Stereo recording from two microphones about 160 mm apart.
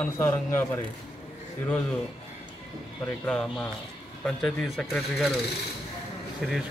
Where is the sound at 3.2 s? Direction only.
5° left (ahead or behind).